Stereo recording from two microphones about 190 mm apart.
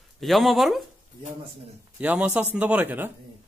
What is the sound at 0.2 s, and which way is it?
Speech, centre (ahead or behind).